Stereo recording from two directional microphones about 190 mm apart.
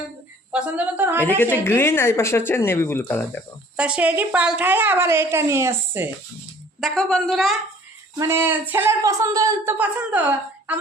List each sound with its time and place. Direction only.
0.5 s a woman's voice: 10° right (ahead or behind)
1.2 s speech: 10° left (ahead or behind)
3.8 s a woman's voice: 5° right (ahead or behind)
6.7 s a man's voice: centre (ahead or behind)
8.2 s a woman's voice: 10° right (ahead or behind)